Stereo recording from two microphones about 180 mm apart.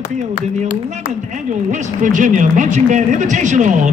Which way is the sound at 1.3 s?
45° right (ahead or behind).